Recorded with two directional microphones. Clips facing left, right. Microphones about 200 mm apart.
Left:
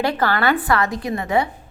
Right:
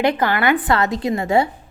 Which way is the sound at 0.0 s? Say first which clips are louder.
Right 2 dB; 15° right (ahead or behind).